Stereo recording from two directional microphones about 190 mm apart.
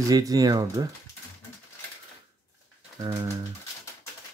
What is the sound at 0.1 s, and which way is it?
Speech, 20° right (ahead or behind).